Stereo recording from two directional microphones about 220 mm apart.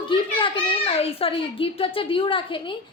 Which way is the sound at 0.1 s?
20° left (ahead or behind).